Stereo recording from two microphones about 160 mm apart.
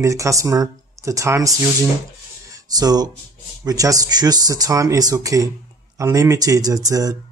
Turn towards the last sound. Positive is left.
turn(degrees=-20)  # may be behind; listen again after turning